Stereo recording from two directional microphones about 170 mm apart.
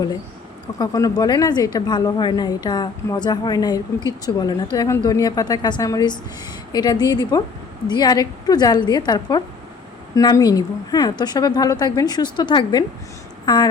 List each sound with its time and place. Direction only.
0.8 s a woman's voice: 20° left (ahead or behind)